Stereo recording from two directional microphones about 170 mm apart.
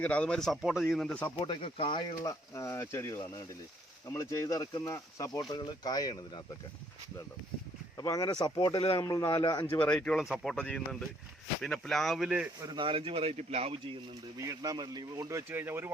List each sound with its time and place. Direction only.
0.0 s speech: 5° left (ahead or behind)
1.4 s speech: 30° left (ahead or behind)
7.9 s speech: 20° left (ahead or behind)
9.7 s speech: 10° left (ahead or behind)
12.6 s speech: 30° right (ahead or behind)
14.3 s speech: 20° right (ahead or behind)